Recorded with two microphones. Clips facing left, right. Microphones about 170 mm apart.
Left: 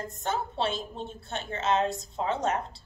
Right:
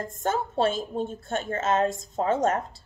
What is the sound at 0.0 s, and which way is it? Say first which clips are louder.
A woman's voice: right 4 dB; 45° right (ahead or behind).